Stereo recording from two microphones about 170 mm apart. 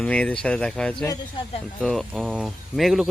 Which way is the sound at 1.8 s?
Centre (ahead or behind).